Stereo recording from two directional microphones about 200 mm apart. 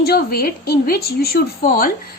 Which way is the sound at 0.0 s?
50° left (ahead or behind).